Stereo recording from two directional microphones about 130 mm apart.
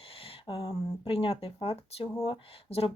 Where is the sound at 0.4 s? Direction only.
40° left (ahead or behind).